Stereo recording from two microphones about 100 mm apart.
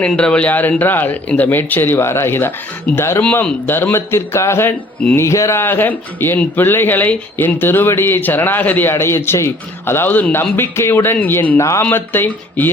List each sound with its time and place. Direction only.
0.0 s speech: 10° left (ahead or behind)